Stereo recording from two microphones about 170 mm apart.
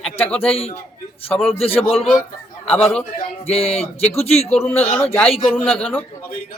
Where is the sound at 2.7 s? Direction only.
5° left (ahead or behind).